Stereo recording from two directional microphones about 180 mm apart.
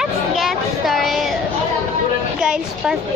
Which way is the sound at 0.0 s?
Centre (ahead or behind).